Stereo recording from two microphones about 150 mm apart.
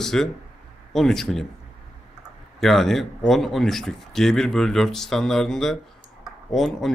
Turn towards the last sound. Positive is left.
turn(degrees=0)  # may be behind; listen again after turning